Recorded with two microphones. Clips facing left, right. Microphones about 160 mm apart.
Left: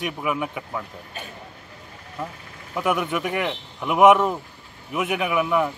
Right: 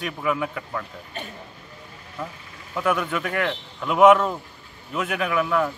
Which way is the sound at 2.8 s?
15° left (ahead or behind).